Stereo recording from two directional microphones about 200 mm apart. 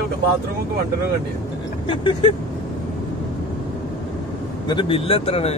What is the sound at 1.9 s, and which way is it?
Speech, 25° left (ahead or behind).